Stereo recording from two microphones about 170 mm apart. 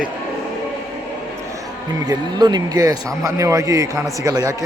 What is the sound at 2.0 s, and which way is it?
A man's voice, 25° right (ahead or behind).